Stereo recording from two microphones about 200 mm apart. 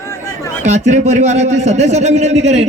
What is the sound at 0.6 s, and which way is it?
A man's voice, 35° right (ahead or behind).